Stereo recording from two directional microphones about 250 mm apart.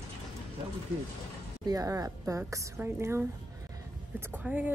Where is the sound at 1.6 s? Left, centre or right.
Centre.